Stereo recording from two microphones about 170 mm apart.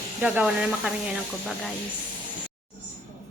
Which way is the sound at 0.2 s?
5° right (ahead or behind).